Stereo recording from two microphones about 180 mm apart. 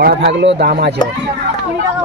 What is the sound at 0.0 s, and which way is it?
Speech, 65° right (ahead or behind).